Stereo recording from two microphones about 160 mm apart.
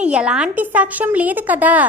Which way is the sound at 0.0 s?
5° right (ahead or behind).